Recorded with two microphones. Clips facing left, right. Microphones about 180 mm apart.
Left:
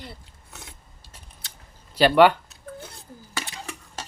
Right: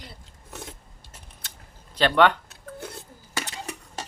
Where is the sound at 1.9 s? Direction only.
10° left (ahead or behind).